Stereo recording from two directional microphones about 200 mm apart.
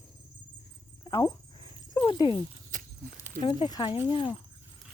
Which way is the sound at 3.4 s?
25° left (ahead or behind).